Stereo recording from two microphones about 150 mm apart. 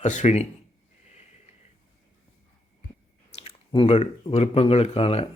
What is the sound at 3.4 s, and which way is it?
Speech, 35° left (ahead or behind).